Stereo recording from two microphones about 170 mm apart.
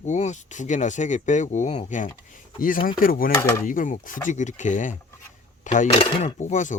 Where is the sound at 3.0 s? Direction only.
55° left (ahead or behind).